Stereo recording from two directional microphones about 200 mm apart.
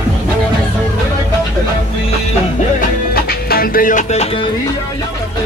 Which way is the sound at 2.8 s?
50° left (ahead or behind).